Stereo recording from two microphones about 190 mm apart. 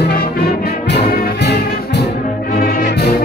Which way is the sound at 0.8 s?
60° left (ahead or behind).